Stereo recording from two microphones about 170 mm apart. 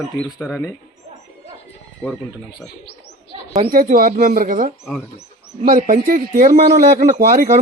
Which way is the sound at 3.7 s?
55° right (ahead or behind).